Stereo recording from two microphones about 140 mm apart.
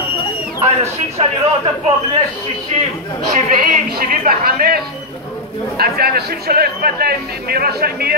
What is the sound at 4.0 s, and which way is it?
Speech, 85° right.